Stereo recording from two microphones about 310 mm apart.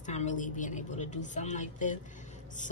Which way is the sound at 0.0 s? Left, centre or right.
Left.